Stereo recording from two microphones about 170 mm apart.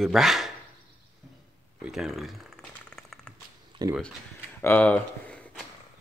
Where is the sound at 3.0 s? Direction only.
5° left (ahead or behind).